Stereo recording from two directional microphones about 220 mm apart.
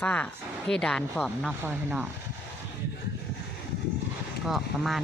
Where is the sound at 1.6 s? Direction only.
10° right (ahead or behind).